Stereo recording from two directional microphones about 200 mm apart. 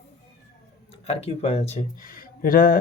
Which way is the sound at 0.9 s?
30° left (ahead or behind).